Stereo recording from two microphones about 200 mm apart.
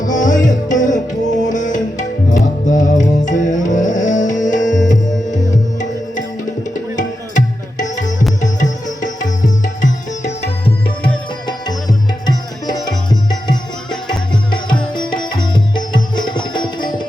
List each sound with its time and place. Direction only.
0.0 s music: 40° left (ahead or behind)
6.9 s music: 40° left (ahead or behind)
11.0 s tabla: 20° left (ahead or behind)
14.9 s music: 20° left (ahead or behind)